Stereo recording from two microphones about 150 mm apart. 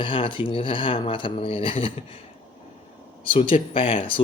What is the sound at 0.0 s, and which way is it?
Speech, 35° left (ahead or behind).